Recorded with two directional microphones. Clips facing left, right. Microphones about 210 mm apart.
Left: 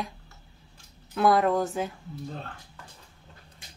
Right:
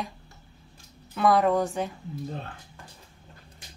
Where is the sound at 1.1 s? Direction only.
Centre (ahead or behind).